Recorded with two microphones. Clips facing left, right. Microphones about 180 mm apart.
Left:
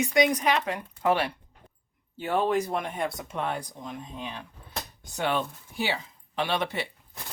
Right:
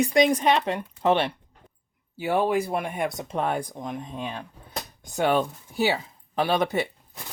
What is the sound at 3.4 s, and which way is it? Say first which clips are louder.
Speech: right 5 dB; 50° right (ahead or behind).